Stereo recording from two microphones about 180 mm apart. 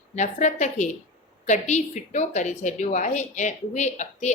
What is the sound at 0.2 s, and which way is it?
A woman's voice, 40° left (ahead or behind).